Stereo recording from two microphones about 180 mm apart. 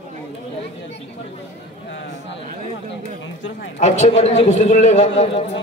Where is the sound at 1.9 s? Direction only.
90° left.